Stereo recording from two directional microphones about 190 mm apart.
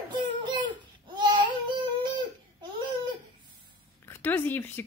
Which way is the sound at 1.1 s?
25° right (ahead or behind).